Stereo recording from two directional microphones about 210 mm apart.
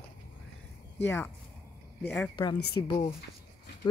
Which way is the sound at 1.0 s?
10° left (ahead or behind).